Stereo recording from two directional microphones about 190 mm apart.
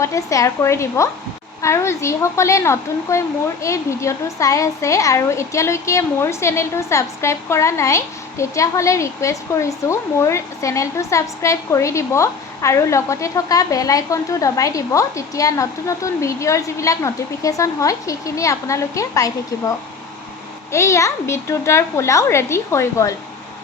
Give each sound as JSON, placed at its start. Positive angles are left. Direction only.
{"t": 0.0, "sound": "a woman's voice", "side_deg": 15}
{"t": 20.7, "sound": "a woman's voice", "side_deg": 15}